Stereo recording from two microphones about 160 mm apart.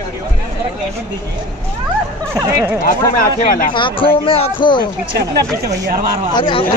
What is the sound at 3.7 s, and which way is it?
Speech, 30° left (ahead or behind).